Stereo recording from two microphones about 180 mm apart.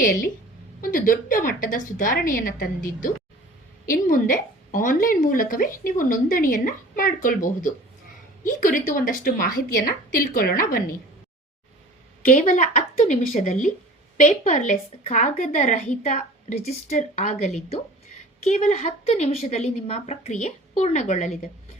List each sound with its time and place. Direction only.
0.0 s a woman's voice: 50° left (ahead or behind)
12.2 s a woman's voice: 45° left (ahead or behind)